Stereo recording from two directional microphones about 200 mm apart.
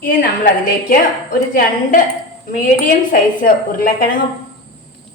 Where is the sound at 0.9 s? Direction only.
45° left (ahead or behind).